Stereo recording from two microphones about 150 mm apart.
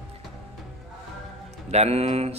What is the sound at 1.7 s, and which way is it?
Speech, 45° right (ahead or behind).